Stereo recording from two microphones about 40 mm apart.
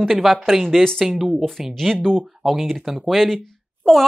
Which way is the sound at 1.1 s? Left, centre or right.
Centre.